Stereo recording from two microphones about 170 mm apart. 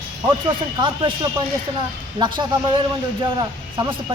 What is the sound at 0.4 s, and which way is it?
Speech, 30° right (ahead or behind).